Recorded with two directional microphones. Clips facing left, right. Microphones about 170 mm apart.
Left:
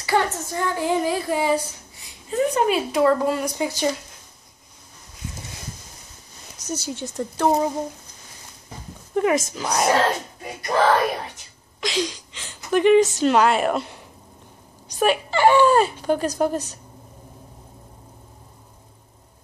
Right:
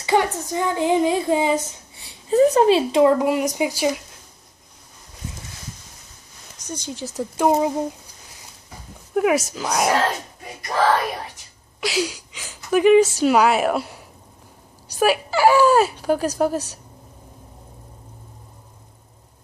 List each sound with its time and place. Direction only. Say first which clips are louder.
0.0 s speech: right 2 dB; 15° right (ahead or behind)
6.7 s speech: left 2 dB; 5° left (ahead or behind)
7.2 s speech: right 2 dB; 5° right (ahead or behind)
9.1 s speech: right 1 dB; 5° right (ahead or behind)
11.8 s a woman's voice: right 1 dB; 10° right (ahead or behind)